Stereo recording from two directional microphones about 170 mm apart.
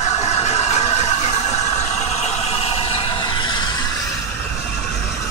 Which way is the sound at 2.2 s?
35° left (ahead or behind).